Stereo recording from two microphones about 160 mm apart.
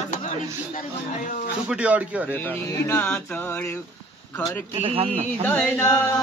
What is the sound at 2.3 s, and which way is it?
Speech, 10° left (ahead or behind).